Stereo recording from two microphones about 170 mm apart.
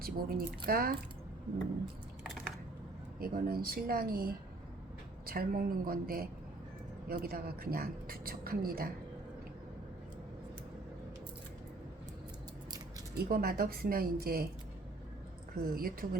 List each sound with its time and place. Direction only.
0.0 s a woman's voice: 60° right (ahead or behind)
2.2 s typing: centre (ahead or behind)
3.2 s a woman's voice: 60° right (ahead or behind)
13.1 s a woman's voice: 60° right (ahead or behind)
15.6 s a woman's voice: 60° right (ahead or behind)